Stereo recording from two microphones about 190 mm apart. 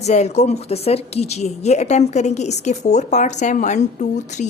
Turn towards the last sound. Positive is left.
turn(degrees=40)  # may be behind; listen again after turning